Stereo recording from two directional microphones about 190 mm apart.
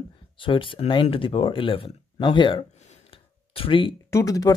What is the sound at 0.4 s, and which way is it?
Speech, 25° left (ahead or behind).